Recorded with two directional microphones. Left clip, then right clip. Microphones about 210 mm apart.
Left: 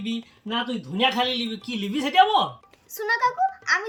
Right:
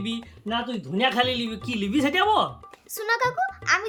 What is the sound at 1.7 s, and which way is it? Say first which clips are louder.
A child's voice: right 2 dB; 10° right (ahead or behind).